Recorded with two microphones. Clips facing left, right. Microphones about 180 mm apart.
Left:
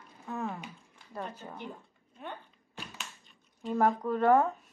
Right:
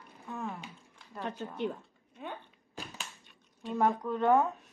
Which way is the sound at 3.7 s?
5° left (ahead or behind).